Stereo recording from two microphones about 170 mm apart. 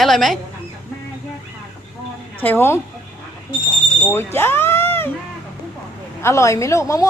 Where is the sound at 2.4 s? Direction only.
10° left (ahead or behind).